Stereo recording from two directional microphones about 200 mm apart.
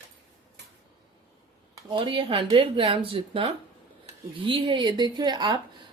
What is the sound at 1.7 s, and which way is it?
A woman's voice, 25° right (ahead or behind).